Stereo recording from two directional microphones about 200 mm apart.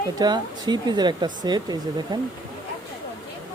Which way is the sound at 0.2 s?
20° right (ahead or behind).